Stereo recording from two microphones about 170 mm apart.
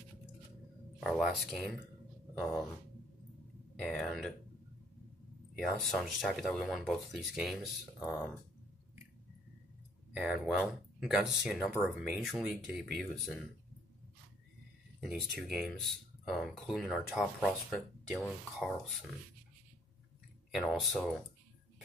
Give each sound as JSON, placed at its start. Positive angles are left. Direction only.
{"t": 0.9, "sound": "speech", "side_deg": 0}
{"t": 3.8, "sound": "speech", "side_deg": 0}
{"t": 5.6, "sound": "speech", "side_deg": 0}
{"t": 10.1, "sound": "speech", "side_deg": -5}
{"t": 15.0, "sound": "speech", "side_deg": 0}
{"t": 20.5, "sound": "speech", "side_deg": 0}